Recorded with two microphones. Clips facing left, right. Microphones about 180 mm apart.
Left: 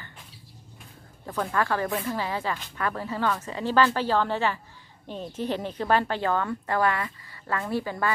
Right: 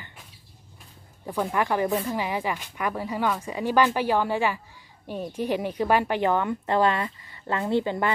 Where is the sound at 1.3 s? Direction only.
15° right (ahead or behind).